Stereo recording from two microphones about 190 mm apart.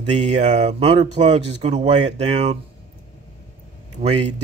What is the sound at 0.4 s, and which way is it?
Speech, 35° right (ahead or behind).